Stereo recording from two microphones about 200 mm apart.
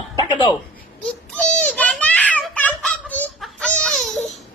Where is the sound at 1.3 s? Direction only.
5° left (ahead or behind).